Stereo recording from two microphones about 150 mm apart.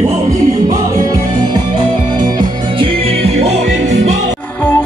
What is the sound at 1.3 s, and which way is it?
Music, 25° right (ahead or behind).